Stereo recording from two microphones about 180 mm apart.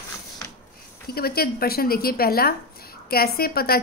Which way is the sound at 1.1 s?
60° left (ahead or behind).